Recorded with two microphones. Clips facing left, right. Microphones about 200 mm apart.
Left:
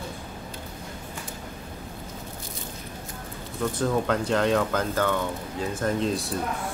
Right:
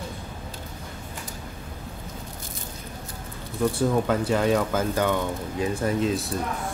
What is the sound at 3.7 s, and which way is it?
Speech, 5° right (ahead or behind).